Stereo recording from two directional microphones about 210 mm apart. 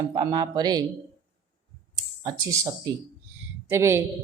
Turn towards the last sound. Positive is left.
turn(degrees=-10)  # may be behind; listen again after turning